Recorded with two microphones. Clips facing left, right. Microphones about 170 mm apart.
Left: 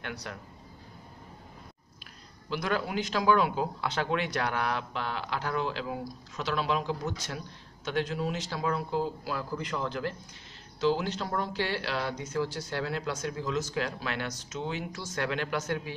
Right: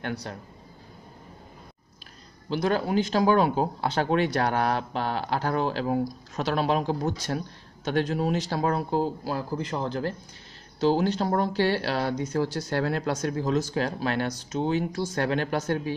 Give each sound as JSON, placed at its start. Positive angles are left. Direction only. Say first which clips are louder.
{"t": 0.1, "sound": "speech", "louder": "right 6 dB", "side_deg": -30}
{"t": 2.5, "sound": "speech", "louder": "right 6 dB", "side_deg": -30}
{"t": 9.0, "sound": "speech", "louder": "right 5 dB", "side_deg": -35}
{"t": 13.6, "sound": "speech", "louder": "right 5 dB", "side_deg": -35}